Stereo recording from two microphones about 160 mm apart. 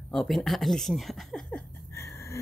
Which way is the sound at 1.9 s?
20° left (ahead or behind).